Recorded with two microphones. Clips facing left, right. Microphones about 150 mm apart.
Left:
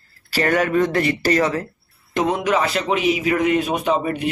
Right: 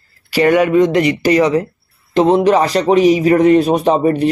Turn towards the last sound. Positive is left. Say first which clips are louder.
# right 8 dB
turn(degrees=-35)  # may be behind; listen again after turning